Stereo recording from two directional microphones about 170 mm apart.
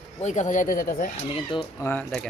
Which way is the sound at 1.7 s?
10° left (ahead or behind).